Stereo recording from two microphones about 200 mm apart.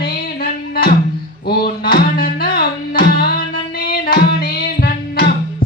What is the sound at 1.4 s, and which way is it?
Music, 50° left (ahead or behind).